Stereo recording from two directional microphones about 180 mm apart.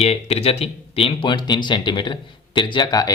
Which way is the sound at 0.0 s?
35° left (ahead or behind).